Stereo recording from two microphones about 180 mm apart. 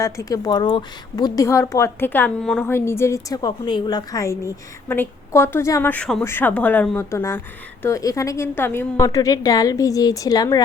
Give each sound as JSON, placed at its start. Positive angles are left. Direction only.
{"t": 0.0, "sound": "a woman's voice", "side_deg": 20}